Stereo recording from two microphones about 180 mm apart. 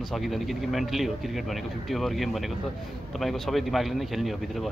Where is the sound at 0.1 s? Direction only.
Centre (ahead or behind).